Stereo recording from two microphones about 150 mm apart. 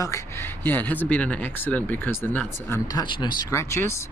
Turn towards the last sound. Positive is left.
turn(degrees=20)  # may be behind; listen again after turning